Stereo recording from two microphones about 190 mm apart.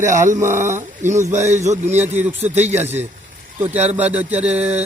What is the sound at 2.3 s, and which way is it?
Speech, 35° right (ahead or behind).